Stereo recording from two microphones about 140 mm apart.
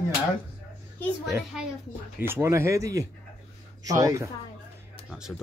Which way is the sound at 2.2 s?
15° right (ahead or behind).